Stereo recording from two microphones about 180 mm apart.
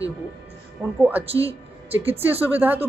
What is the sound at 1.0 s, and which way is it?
Speech, 10° right (ahead or behind).